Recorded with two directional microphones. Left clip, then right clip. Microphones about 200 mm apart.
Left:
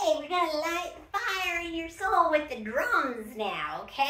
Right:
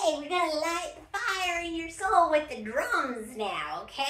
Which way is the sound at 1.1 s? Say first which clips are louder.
Even; 10° right (ahead or behind).